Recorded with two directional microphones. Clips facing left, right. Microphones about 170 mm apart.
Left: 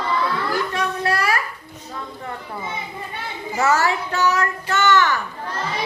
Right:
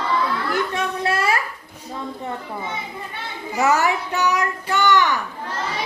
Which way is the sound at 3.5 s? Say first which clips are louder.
Right 1 dB; 15° right (ahead or behind).